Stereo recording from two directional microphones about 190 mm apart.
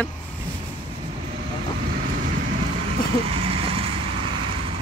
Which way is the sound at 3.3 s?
30° right (ahead or behind).